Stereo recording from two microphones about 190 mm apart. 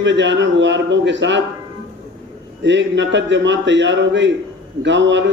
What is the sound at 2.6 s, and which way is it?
A man's voice, 70° right (ahead or behind).